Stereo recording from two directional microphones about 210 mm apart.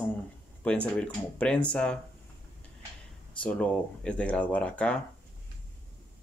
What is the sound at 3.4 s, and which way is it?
Speech, 5° left (ahead or behind).